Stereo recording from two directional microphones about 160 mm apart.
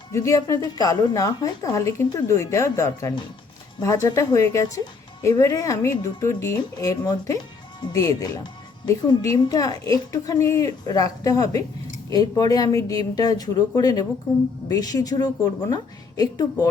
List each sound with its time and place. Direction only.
0.1 s a woman's voice: 20° left (ahead or behind)